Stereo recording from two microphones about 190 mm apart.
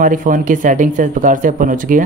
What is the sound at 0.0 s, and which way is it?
Speech, 45° right (ahead or behind).